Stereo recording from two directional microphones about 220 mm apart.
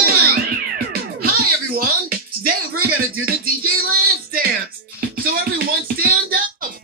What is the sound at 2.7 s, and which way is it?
Music, 80° right.